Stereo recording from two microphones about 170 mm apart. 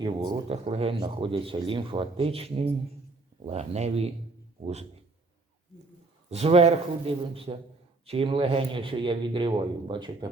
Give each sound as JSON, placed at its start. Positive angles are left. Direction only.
{"t": 0.0, "sound": "a man's voice", "side_deg": -25}
{"t": 0.4, "sound": "speech", "side_deg": -35}
{"t": 6.3, "sound": "a man's voice", "side_deg": -40}